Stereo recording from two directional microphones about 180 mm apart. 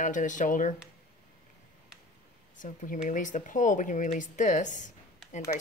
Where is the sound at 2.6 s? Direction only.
45° left (ahead or behind).